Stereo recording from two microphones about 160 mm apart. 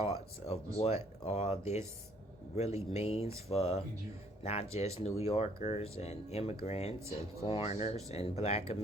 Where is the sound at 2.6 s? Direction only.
40° left (ahead or behind).